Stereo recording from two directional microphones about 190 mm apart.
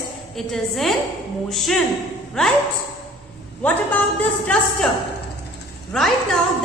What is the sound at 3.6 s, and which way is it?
Speech, 10° left (ahead or behind).